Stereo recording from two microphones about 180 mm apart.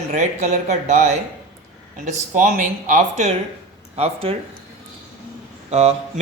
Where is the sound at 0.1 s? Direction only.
45° right (ahead or behind).